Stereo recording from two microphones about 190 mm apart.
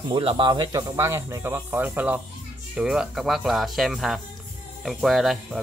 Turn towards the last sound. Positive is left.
turn(degrees=0)  # may be behind; listen again after turning